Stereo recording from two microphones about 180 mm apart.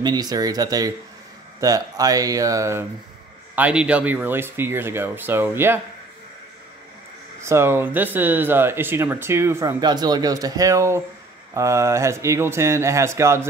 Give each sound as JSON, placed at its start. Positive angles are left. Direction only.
{"t": 0.0, "sound": "speech", "side_deg": -20}
{"t": 7.4, "sound": "speech", "side_deg": -15}